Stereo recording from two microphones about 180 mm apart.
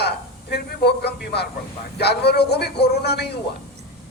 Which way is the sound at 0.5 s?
65° left (ahead or behind).